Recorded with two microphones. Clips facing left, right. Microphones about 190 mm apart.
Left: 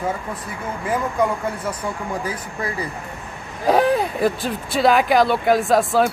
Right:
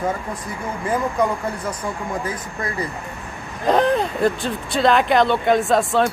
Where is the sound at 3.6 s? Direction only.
5° left (ahead or behind).